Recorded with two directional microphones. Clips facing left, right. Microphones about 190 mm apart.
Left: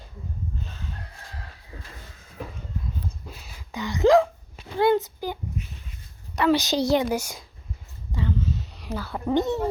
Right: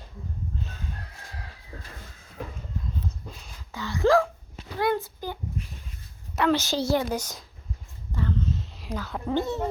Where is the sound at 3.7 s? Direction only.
20° left (ahead or behind).